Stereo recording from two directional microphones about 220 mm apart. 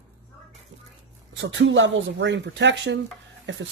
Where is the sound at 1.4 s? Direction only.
60° right (ahead or behind).